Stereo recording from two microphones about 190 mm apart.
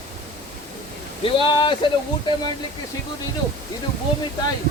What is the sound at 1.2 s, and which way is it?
Speech, 30° left (ahead or behind).